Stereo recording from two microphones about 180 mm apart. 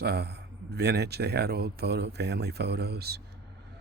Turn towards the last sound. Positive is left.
turn(degrees=-65)  # may be behind; listen again after turning